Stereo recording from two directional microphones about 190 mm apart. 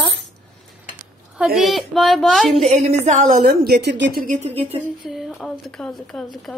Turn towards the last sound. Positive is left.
turn(degrees=0)  # may be behind; listen again after turning